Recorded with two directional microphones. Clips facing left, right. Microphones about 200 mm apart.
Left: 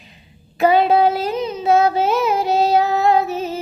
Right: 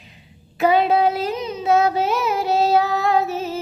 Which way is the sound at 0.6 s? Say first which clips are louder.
Left 2 dB; 35° left (ahead or behind).